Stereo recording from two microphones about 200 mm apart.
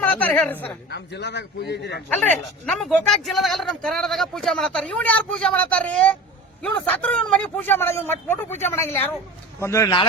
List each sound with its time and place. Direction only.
0.0 s a man's voice: 10° left (ahead or behind)
0.9 s a man's voice: 55° left (ahead or behind)
2.6 s a man's voice: 5° left (ahead or behind)